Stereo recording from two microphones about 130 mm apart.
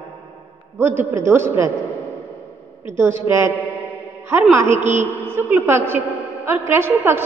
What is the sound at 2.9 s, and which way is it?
A man's voice, 20° right (ahead or behind).